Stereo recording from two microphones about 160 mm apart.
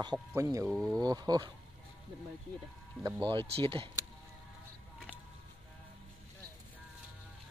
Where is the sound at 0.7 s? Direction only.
Centre (ahead or behind).